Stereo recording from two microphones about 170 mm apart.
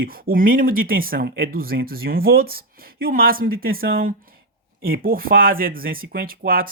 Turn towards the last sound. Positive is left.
turn(degrees=-55)  # may be behind; listen again after turning